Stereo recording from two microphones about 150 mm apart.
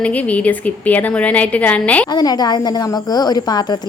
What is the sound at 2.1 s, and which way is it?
Speech, 25° left (ahead or behind).